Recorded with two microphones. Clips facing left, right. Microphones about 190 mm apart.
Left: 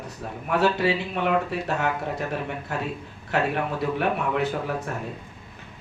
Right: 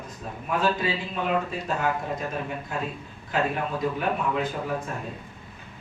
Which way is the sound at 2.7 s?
70° left (ahead or behind).